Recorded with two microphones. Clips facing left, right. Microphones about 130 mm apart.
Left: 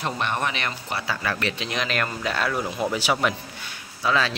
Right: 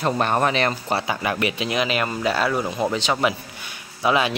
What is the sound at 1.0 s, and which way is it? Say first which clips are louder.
Speech: right 4 dB; 20° right (ahead or behind).